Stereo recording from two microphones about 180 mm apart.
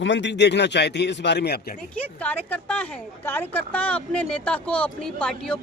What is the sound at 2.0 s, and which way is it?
Speech, 10° left (ahead or behind).